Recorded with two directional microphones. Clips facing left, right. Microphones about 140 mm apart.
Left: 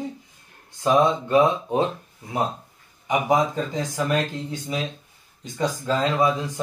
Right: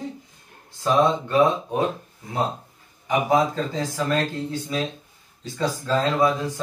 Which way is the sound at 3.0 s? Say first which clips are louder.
Right 1 dB; 15° left (ahead or behind).